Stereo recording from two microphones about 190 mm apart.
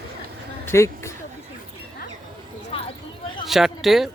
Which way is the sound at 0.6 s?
15° left (ahead or behind).